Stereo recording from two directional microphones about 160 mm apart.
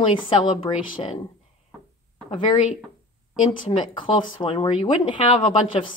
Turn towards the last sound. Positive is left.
turn(degrees=30)  # may be behind; listen again after turning